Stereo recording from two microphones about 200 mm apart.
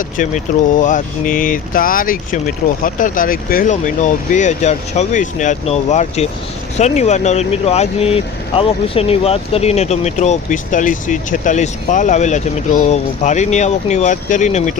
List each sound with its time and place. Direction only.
0.2 s speech: 40° left (ahead or behind)